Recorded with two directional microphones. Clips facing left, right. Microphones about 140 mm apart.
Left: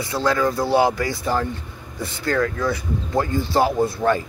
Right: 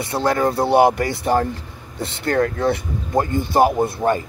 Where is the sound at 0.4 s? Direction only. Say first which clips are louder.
Right 2 dB; 30° right (ahead or behind).